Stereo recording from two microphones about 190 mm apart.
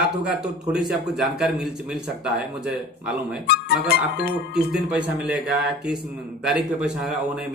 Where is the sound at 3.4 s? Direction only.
55° left (ahead or behind).